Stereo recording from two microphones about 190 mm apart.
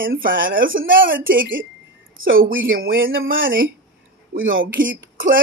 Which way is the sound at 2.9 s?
90° right.